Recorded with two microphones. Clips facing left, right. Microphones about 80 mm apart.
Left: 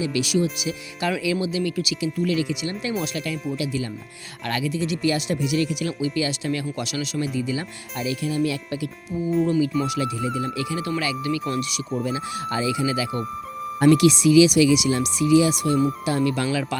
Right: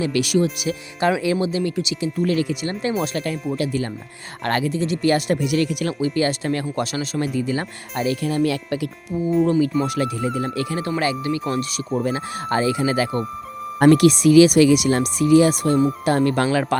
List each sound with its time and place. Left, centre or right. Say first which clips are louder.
0.0 s speech: right 3 dB; right
1.2 s speech: right 3 dB; right
1.7 s speech: right 2 dB; right
9.7 s speech: right 2 dB; right
11.9 s speech: right 3 dB; right